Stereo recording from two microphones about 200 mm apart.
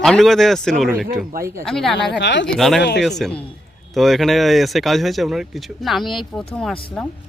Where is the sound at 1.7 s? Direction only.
Centre (ahead or behind).